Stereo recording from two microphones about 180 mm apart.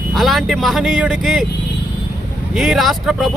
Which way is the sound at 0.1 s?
Centre (ahead or behind).